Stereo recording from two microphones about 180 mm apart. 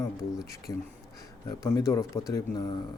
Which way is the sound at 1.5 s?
15° left (ahead or behind).